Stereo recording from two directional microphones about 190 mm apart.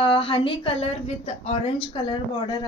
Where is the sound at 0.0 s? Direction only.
30° left (ahead or behind).